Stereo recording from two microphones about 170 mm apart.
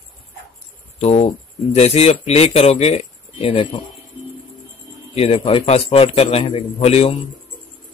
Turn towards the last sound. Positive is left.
turn(degrees=35)  # may be behind; listen again after turning